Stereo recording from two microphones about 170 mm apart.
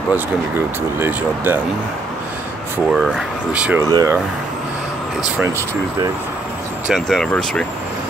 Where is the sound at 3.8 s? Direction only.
20° right (ahead or behind).